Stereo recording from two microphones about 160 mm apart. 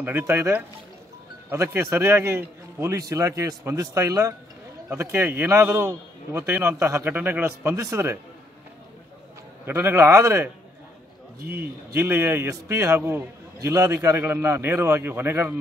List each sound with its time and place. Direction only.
0.0 s a man's voice: 15° right (ahead or behind)
9.7 s a man's voice: 15° right (ahead or behind)
11.5 s a man's voice: 15° right (ahead or behind)